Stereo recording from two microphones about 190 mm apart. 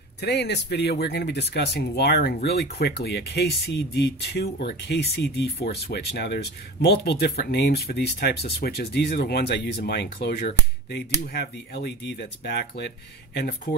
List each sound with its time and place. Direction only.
0.2 s speech: 65° left (ahead or behind)